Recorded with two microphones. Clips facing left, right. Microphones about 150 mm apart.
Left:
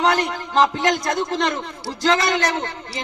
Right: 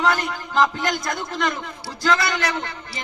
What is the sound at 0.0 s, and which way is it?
Speech, 35° left (ahead or behind).